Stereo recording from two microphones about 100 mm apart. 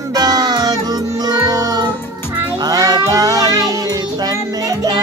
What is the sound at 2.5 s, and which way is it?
Child singing, 40° right (ahead or behind).